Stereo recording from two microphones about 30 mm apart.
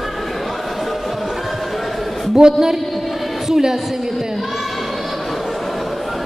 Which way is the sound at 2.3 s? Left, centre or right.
Right.